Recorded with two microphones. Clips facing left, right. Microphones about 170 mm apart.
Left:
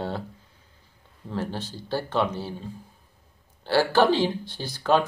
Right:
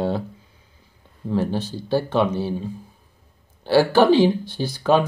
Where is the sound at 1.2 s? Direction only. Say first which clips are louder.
Right 8 dB; 15° right (ahead or behind).